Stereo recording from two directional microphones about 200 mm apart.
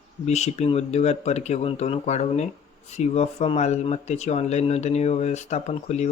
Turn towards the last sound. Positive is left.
turn(degrees=35)  # may be behind; listen again after turning